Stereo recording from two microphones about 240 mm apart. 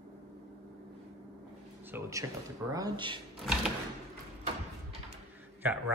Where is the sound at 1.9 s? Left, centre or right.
Centre.